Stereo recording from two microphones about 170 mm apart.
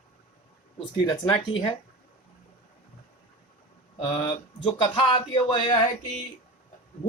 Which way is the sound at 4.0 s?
30° left (ahead or behind).